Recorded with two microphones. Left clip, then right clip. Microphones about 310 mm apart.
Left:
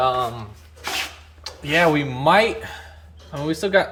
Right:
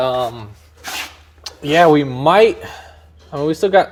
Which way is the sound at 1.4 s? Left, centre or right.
Right.